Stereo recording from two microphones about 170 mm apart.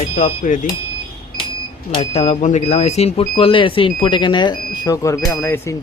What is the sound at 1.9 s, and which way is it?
Speech, 40° left (ahead or behind).